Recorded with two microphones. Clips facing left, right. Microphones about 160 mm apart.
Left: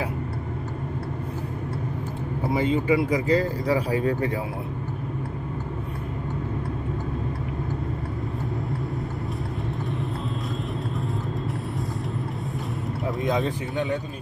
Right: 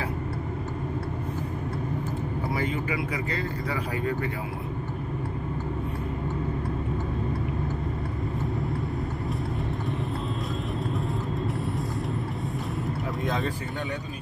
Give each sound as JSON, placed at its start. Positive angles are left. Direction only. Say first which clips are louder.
{"t": 2.5, "sound": "speech", "louder": "left 9 dB", "side_deg": 25}